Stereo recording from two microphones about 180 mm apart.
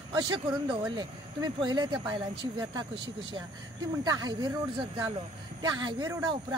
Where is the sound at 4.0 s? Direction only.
20° right (ahead or behind).